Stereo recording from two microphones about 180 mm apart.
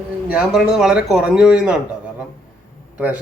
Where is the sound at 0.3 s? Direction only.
5° right (ahead or behind).